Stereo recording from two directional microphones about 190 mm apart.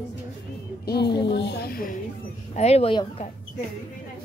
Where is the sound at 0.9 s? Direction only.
60° left (ahead or behind).